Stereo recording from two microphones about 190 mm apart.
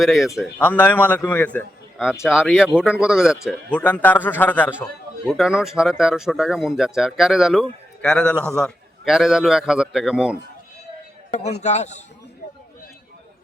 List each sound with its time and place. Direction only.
0.0 s speech: centre (ahead or behind)
2.2 s speech: 5° right (ahead or behind)
3.5 s speech: 5° left (ahead or behind)
5.2 s speech: 5° right (ahead or behind)
11.3 s a man's voice: 35° left (ahead or behind)